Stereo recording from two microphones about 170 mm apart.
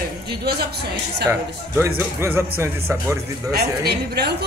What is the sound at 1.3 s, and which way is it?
Speech, 15° right (ahead or behind).